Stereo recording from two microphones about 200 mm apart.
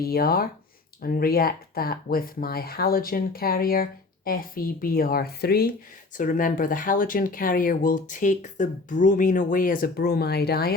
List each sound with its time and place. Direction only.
0.0 s speech: 50° left (ahead or behind)